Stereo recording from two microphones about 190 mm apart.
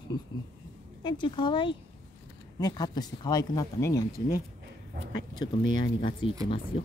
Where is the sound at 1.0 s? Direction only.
25° left (ahead or behind).